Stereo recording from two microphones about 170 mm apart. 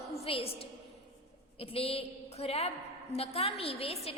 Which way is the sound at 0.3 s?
35° left (ahead or behind).